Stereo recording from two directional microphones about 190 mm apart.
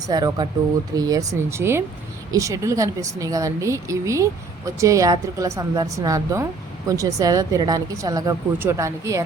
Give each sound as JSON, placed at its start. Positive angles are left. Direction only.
{"t": 0.1, "sound": "speech", "side_deg": -20}